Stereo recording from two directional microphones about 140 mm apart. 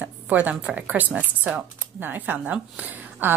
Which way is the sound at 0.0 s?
10° right (ahead or behind).